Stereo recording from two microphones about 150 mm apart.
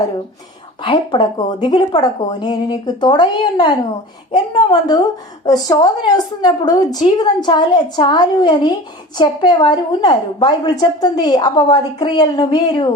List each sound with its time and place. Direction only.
0.9 s a woman's voice: 35° left (ahead or behind)